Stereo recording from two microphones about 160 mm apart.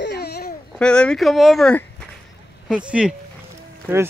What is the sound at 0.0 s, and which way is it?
Baby cry, 90° left.